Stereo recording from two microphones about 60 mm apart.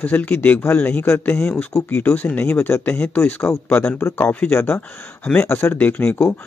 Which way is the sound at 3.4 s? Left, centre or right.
Left.